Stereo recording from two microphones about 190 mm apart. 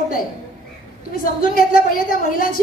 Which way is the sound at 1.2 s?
50° left (ahead or behind).